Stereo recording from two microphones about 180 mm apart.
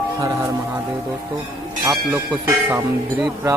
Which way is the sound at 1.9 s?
10° right (ahead or behind).